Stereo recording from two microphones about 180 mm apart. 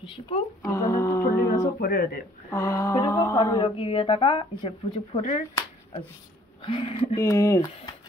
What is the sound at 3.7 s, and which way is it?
Speech, 30° left (ahead or behind).